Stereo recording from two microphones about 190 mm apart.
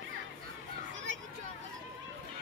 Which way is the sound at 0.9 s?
80° right.